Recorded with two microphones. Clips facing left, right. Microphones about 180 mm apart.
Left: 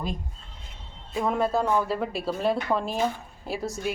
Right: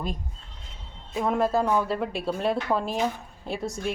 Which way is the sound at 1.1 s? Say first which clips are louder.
Right 1 dB; centre (ahead or behind).